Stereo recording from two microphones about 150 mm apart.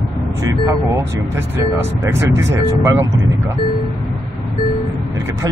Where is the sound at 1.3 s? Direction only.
15° right (ahead or behind).